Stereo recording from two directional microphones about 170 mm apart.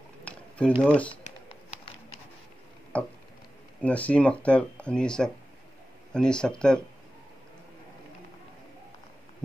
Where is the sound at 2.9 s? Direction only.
5° left (ahead or behind).